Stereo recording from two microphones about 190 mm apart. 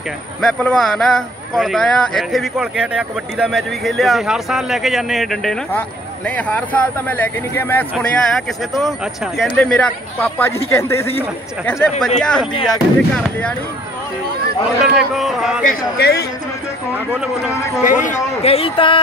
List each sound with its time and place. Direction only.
0.4 s speech: 5° left (ahead or behind)
14.8 s speech: centre (ahead or behind)
15.6 s speech: 55° left (ahead or behind)
17.1 s speech: 5° right (ahead or behind)
18.0 s speech: 35° left (ahead or behind)